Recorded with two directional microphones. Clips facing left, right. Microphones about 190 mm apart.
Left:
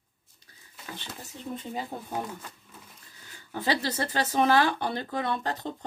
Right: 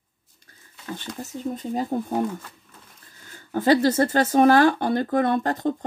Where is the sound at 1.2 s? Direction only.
40° right (ahead or behind).